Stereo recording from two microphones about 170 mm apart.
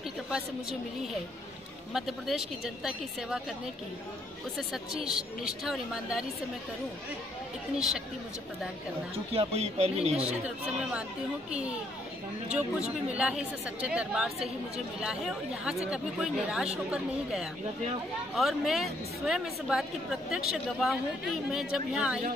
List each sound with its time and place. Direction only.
2.0 s a woman's voice: centre (ahead or behind)
4.6 s a woman's voice: 5° right (ahead or behind)
7.7 s a woman's voice: 5° right (ahead or behind)
9.3 s speech: 35° right (ahead or behind)
10.8 s speech: 5° right (ahead or behind)
12.5 s a woman's voice: 5° right (ahead or behind)